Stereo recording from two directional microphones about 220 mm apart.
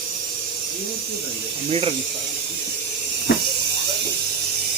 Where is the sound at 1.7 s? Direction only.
25° right (ahead or behind).